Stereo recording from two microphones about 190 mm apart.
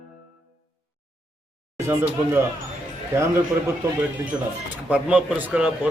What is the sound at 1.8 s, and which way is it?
Speech, 10° right (ahead or behind).